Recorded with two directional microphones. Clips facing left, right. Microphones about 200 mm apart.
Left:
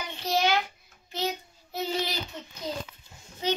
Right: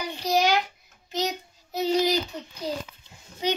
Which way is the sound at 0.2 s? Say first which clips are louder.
Right 3 dB; 15° right (ahead or behind).